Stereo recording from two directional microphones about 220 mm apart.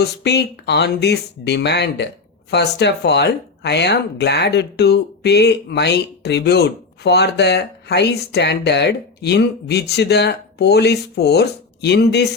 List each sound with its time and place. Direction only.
0.0 s speech: 50° left (ahead or behind)